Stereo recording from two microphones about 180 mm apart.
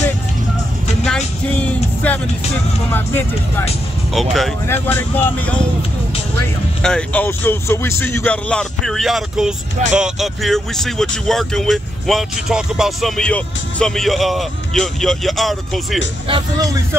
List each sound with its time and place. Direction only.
1.0 s music: 5° left (ahead or behind)
2.9 s speech: 10° left (ahead or behind)
4.1 s speech: centre (ahead or behind)
4.6 s speech: 10° left (ahead or behind)
6.8 s speech: 5° left (ahead or behind)
16.3 s speech: 30° right (ahead or behind)